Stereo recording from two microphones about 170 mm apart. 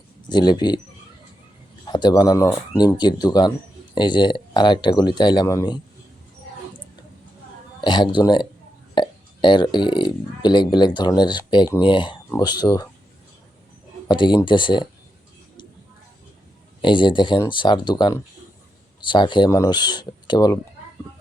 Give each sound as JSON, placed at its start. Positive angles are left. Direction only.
{"t": 0.3, "sound": "speech", "side_deg": 25}
{"t": 1.9, "sound": "speech", "side_deg": 25}
{"t": 7.8, "sound": "speech", "side_deg": 25}
{"t": 14.1, "sound": "speech", "side_deg": 25}
{"t": 16.8, "sound": "speech", "side_deg": 30}